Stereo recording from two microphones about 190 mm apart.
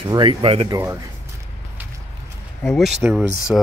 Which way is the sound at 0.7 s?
15° right (ahead or behind).